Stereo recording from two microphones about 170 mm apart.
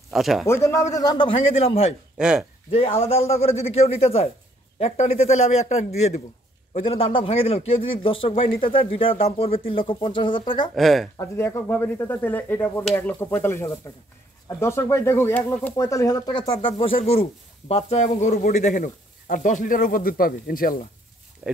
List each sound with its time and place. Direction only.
0.1 s speech: centre (ahead or behind)
0.5 s a man's voice: 15° left (ahead or behind); by 2.0 s 35° left (ahead or behind)
2.1 s speech: 5° right (ahead or behind)
2.7 s a man's voice: 35° left (ahead or behind)
10.7 s speech: centre (ahead or behind)
11.1 s speech: 15° left (ahead or behind); by 20.8 s 60° left (ahead or behind)